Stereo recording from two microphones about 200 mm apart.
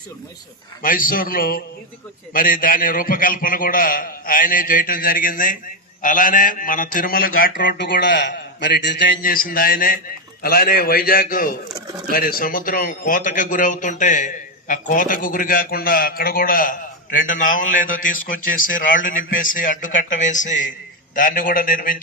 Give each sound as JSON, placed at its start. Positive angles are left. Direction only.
{"t": 0.8, "sound": "a man's voice", "side_deg": 45}